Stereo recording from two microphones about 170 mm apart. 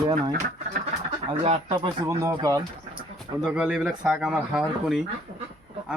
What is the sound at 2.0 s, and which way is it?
Speech, 20° right (ahead or behind).